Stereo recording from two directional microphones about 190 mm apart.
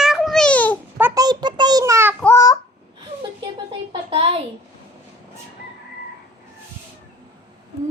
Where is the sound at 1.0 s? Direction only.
10° right (ahead or behind).